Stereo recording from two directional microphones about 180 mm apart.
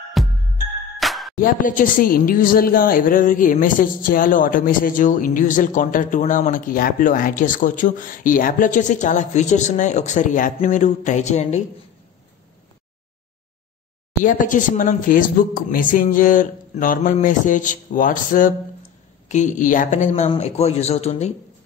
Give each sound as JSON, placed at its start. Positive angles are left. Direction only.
{"t": 0.2, "sound": "music", "side_deg": 0}
{"t": 1.3, "sound": "speech", "side_deg": 50}
{"t": 14.2, "sound": "speech", "side_deg": 45}